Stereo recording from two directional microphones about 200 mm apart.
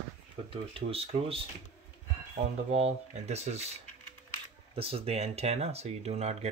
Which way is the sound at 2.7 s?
30° right (ahead or behind).